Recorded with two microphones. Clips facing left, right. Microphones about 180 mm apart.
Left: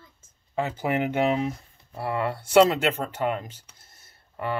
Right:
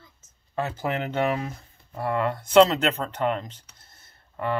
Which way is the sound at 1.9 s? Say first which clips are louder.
Right 2 dB; 5° left (ahead or behind).